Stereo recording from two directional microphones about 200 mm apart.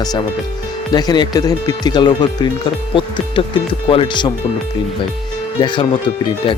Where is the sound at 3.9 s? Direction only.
25° left (ahead or behind).